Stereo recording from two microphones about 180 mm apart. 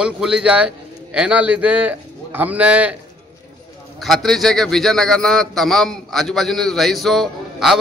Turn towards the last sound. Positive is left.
turn(degrees=0)  # may be behind; listen again after turning